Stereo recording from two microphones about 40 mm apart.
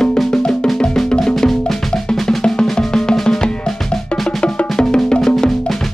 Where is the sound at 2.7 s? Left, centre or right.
Centre.